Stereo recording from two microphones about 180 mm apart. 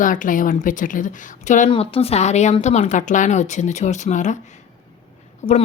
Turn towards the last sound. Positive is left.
turn(degrees=30)  # may be behind; listen again after turning